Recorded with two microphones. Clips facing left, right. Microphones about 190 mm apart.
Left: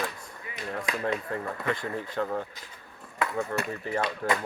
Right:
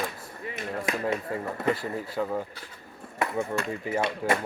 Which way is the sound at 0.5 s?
25° right (ahead or behind).